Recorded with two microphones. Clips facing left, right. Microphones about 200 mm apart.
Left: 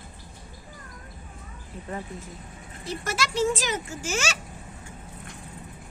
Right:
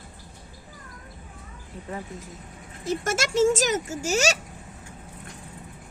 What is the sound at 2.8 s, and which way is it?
Speech, 45° right (ahead or behind).